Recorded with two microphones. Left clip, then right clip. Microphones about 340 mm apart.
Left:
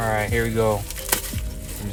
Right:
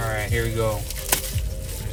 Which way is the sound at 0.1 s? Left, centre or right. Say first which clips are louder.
Left 4 dB; left.